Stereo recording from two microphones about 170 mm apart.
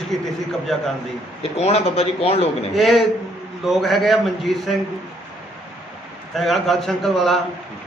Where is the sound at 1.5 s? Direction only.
35° left (ahead or behind).